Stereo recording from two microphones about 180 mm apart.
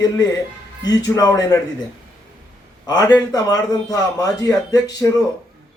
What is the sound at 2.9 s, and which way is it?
A man's voice, 20° left (ahead or behind).